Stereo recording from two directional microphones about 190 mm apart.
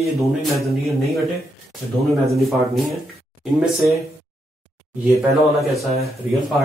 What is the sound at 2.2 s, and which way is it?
A man's voice, centre (ahead or behind).